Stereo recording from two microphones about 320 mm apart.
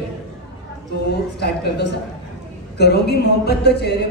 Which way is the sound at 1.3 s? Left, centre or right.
Left.